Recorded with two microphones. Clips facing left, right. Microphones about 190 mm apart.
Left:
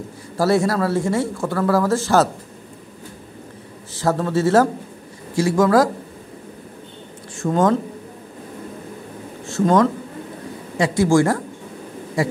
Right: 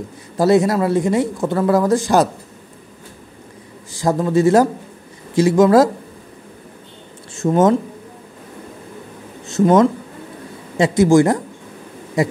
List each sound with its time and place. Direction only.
0.4 s speech: 20° right (ahead or behind)
3.9 s speech: 15° right (ahead or behind)
7.3 s speech: 20° right (ahead or behind)
9.5 s speech: 20° right (ahead or behind)